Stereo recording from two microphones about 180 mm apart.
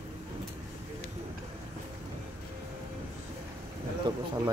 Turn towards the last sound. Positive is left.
turn(degrees=-25)  # may be behind; listen again after turning